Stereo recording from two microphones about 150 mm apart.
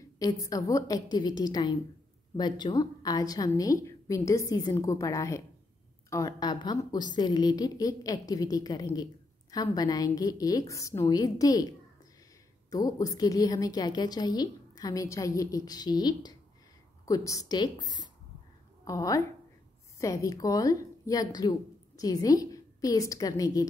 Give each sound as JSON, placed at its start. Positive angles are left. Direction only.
{"t": 0.2, "sound": "a woman's voice", "side_deg": 25}